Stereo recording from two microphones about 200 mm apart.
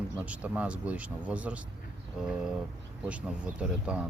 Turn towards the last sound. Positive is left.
turn(degrees=-5)  # may be behind; listen again after turning